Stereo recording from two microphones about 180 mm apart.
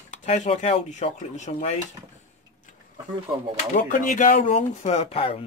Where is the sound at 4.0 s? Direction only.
45° left (ahead or behind).